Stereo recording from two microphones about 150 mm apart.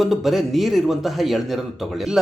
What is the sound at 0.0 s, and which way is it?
Speech, centre (ahead or behind).